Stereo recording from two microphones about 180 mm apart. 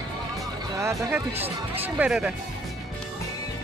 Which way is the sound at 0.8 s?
15° right (ahead or behind).